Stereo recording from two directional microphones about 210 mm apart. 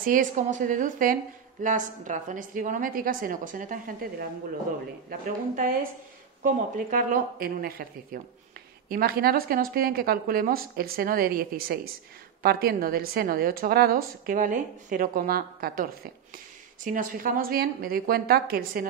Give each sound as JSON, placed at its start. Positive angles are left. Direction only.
{"t": 0.0, "sound": "a woman's voice", "side_deg": -40}